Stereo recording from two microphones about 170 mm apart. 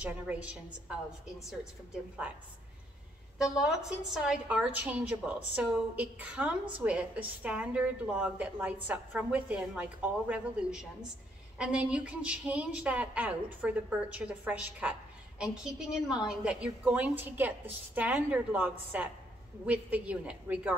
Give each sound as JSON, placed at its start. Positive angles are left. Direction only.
{"t": 0.0, "sound": "a woman's voice", "side_deg": -5}
{"t": 3.5, "sound": "a woman's voice", "side_deg": 0}